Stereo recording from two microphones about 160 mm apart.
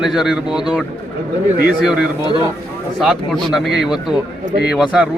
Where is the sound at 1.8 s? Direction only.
5° right (ahead or behind).